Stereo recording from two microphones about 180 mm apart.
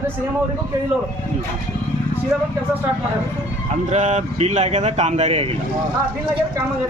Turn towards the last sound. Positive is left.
turn(degrees=-35)  # may be behind; listen again after turning